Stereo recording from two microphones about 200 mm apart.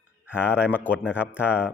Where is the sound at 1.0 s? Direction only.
10° left (ahead or behind).